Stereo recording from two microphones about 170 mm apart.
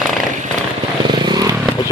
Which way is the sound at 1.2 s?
25° right (ahead or behind).